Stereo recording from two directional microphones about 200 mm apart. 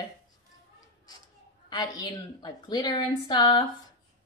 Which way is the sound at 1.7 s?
20° left (ahead or behind).